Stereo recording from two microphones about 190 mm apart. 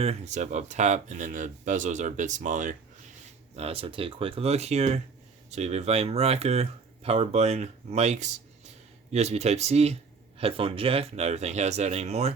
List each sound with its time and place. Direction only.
0.0 s speech: 35° right (ahead or behind)